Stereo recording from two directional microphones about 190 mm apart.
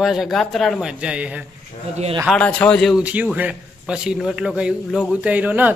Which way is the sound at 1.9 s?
35° right (ahead or behind).